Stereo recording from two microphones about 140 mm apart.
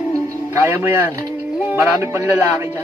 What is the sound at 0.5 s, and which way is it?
Speech, 15° right (ahead or behind).